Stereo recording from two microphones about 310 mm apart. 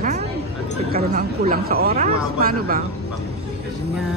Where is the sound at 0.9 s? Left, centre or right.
Right.